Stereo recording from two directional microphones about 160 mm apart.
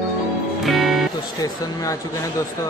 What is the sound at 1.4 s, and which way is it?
Speech, 20° left (ahead or behind).